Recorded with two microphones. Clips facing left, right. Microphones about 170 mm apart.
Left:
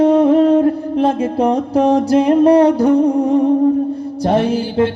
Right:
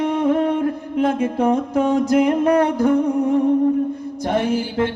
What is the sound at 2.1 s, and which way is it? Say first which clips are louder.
Speech: left 6 dB; 30° left (ahead or behind).